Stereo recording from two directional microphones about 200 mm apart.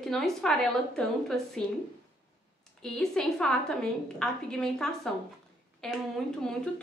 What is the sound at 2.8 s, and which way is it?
A woman's voice, 5° left (ahead or behind).